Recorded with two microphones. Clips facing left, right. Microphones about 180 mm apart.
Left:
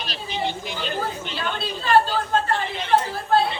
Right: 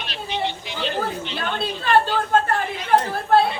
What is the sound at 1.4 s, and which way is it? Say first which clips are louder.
Speech: right 1 dB; 55° right (ahead or behind).